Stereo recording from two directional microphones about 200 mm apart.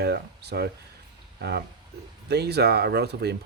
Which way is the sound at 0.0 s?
55° right (ahead or behind).